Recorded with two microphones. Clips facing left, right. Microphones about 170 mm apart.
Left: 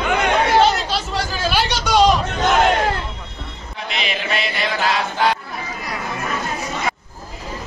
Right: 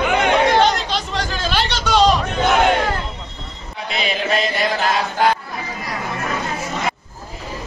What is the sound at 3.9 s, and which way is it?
Chant, 40° right (ahead or behind).